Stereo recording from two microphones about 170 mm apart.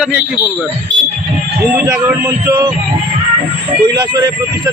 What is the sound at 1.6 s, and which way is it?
Speech, 15° right (ahead or behind).